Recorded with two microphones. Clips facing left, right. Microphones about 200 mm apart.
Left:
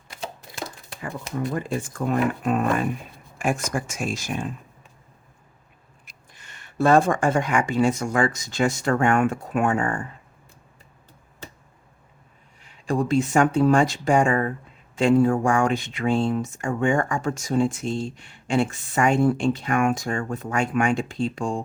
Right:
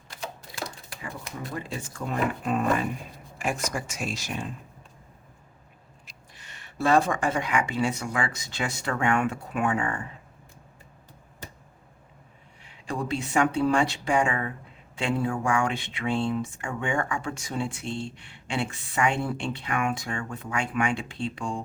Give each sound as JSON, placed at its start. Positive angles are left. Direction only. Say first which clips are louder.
{"t": 0.2, "sound": "typewriter", "louder": "left 2 dB", "side_deg": 25}
{"t": 1.5, "sound": "speech", "louder": "left 7 dB", "side_deg": 50}
{"t": 6.1, "sound": "speech", "louder": "left 1 dB", "side_deg": 50}
{"t": 12.6, "sound": "speech", "louder": "left 7 dB", "side_deg": 45}